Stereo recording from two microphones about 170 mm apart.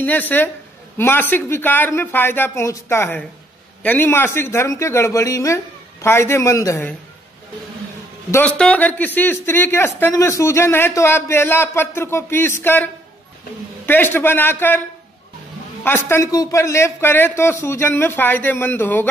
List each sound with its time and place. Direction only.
0.0 s speech: 10° left (ahead or behind)
8.3 s speech: 10° left (ahead or behind)
15.8 s speech: 10° left (ahead or behind)